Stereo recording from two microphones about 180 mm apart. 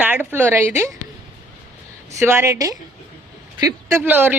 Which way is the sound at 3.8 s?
15° right (ahead or behind).